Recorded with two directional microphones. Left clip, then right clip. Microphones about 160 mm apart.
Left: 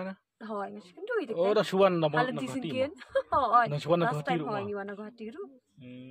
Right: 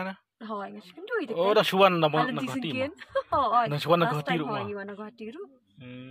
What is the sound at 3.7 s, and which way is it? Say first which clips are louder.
Speech: right 4 dB; 15° right (ahead or behind).